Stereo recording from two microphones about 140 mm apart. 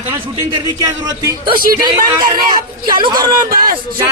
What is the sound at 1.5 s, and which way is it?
Speech, 90° right.